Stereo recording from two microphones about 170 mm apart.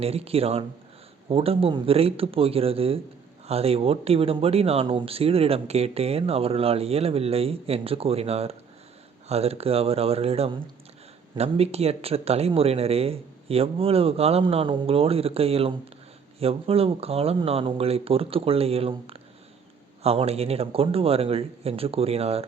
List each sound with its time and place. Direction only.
0.0 s speech: 35° right (ahead or behind)